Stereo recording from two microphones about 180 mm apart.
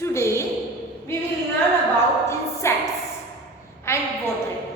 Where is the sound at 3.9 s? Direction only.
15° left (ahead or behind).